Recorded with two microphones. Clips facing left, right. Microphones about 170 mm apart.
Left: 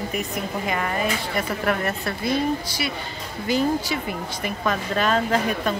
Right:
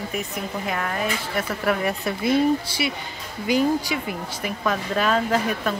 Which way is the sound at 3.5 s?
10° right (ahead or behind).